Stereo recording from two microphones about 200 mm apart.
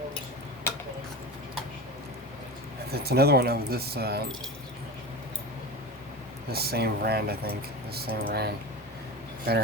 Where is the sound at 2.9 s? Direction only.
50° right (ahead or behind).